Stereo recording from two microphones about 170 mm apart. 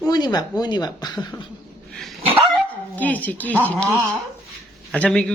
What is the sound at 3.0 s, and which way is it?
Speech, 10° left (ahead or behind).